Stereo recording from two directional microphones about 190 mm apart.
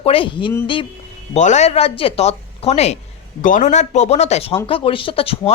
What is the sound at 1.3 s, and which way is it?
Speech, 35° left (ahead or behind).